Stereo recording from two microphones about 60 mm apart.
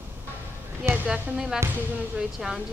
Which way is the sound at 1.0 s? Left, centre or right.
Centre.